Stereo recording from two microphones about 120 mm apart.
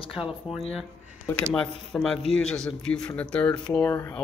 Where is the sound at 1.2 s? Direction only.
10° left (ahead or behind).